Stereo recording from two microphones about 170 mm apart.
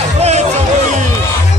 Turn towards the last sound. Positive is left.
turn(degrees=-40)  # may be behind; listen again after turning